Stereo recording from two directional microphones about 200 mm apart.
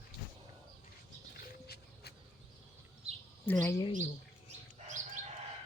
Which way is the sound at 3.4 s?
10° left (ahead or behind).